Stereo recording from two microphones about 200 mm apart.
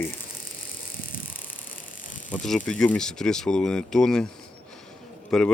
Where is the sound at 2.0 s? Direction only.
40° left (ahead or behind).